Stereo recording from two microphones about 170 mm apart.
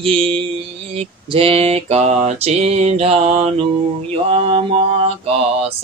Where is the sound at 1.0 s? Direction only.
35° right (ahead or behind).